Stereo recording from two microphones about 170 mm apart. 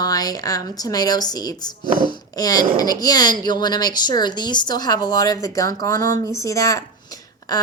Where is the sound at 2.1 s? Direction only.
20° left (ahead or behind).